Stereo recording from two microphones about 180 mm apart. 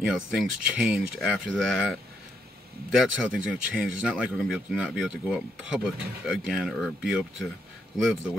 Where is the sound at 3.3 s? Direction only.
5° right (ahead or behind).